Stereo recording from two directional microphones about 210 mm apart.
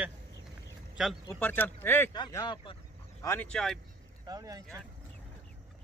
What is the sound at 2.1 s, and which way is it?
Speech, 20° left (ahead or behind).